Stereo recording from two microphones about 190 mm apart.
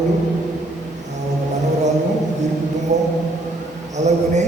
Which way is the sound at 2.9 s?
40° right (ahead or behind).